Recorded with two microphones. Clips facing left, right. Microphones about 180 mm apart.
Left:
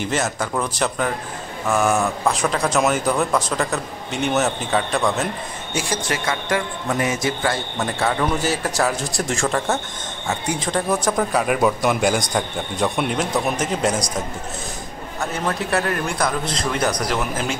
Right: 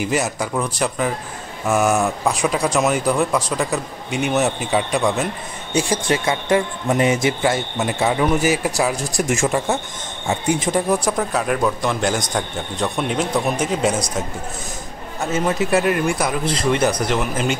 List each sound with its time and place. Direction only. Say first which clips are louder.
0.0 s a man's voice: right 2 dB; 5° right (ahead or behind)
2.7 s speech: right 1 dB; centre (ahead or behind)
4.6 s a man's voice: right 1 dB; 10° right (ahead or behind)
6.0 s a man's voice: right 4 dB; 25° right (ahead or behind)
11.1 s speech: left 1 dB; 5° left (ahead or behind)
15.3 s a man's voice: right 5 dB; 15° right (ahead or behind); by 17.6 s centre (ahead or behind)